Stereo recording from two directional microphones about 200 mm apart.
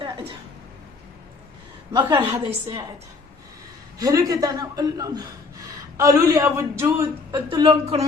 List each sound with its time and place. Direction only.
0.0 s a sound: 25° right (ahead or behind)
1.9 s a woman's voice: 20° right (ahead or behind)
3.9 s a man's voice: 15° right (ahead or behind)